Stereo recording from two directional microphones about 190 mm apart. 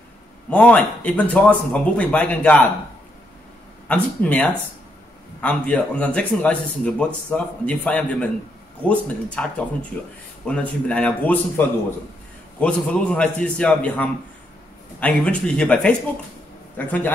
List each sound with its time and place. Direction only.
0.5 s speech: 5° left (ahead or behind)
3.9 s a man's voice: 5° left (ahead or behind)